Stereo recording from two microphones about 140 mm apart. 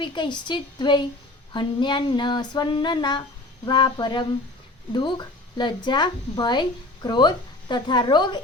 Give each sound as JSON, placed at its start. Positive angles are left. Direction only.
{"t": 0.0, "sound": "a woman's voice", "side_deg": 35}